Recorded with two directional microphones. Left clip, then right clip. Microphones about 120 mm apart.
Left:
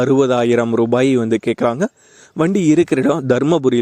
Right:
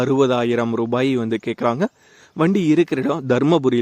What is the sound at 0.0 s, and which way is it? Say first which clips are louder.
Speech: left 3 dB; 40° left (ahead or behind).